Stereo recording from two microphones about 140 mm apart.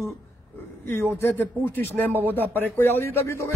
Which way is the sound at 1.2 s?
15° left (ahead or behind).